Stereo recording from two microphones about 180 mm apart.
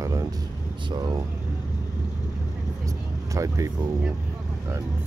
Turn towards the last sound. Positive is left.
turn(degrees=-20)  # may be behind; listen again after turning